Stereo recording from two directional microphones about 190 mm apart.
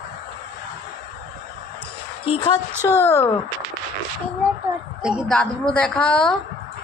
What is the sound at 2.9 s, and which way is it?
Speech, 15° left (ahead or behind).